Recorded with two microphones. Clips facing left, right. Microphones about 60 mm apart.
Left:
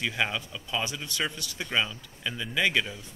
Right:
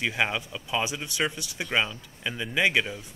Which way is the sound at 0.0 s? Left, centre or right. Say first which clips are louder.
Right 2 dB; centre.